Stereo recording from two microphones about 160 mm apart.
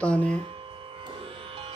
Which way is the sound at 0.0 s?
5° left (ahead or behind).